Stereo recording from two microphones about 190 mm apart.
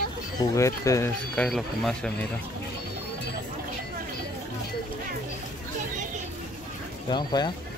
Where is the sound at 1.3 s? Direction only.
5° left (ahead or behind).